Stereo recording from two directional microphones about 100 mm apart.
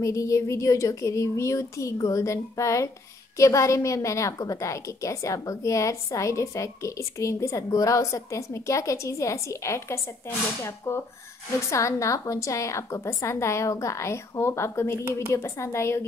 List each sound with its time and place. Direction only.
0.0 s a woman's voice: 30° left (ahead or behind)